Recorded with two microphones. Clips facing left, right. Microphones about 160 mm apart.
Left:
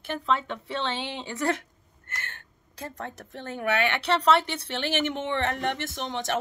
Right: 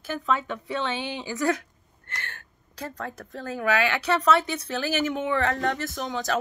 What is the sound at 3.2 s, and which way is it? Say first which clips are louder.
Speech: right 3 dB; 25° left (ahead or behind).